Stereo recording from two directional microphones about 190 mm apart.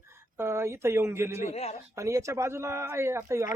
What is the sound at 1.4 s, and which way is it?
Speech, 35° left (ahead or behind).